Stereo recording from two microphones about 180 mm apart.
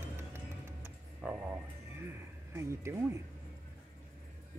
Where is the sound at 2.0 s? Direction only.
15° right (ahead or behind).